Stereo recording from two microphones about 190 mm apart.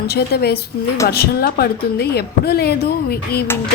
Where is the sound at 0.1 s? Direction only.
55° left (ahead or behind).